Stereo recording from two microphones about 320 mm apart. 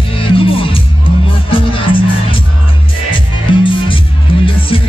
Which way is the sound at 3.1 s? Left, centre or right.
Centre.